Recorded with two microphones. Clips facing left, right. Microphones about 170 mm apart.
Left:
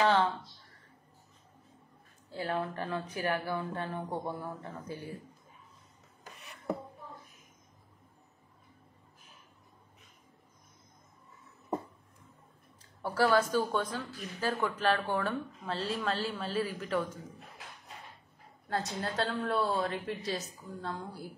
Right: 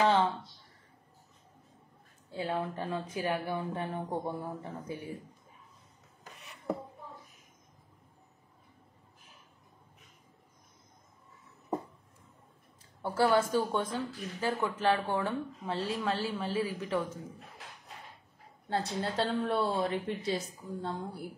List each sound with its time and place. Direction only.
0.0 s a sound: 20° right (ahead or behind)
2.3 s a woman's voice: 20° right (ahead or behind)
13.0 s a woman's voice: 20° right (ahead or behind)
18.7 s a woman's voice: 25° right (ahead or behind)